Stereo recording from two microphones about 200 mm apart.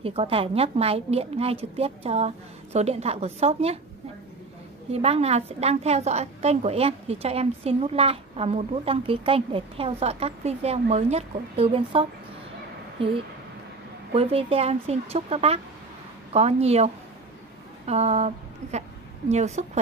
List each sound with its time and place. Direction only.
0.0 s a woman's voice: 30° right (ahead or behind)
4.9 s a woman's voice: 30° right (ahead or behind)